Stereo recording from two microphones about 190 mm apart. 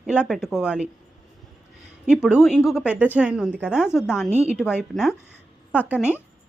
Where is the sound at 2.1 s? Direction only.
5° right (ahead or behind).